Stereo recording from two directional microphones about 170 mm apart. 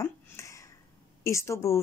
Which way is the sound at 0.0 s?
15° left (ahead or behind).